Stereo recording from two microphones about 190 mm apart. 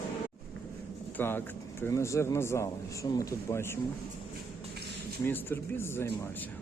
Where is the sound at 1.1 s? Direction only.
10° left (ahead or behind).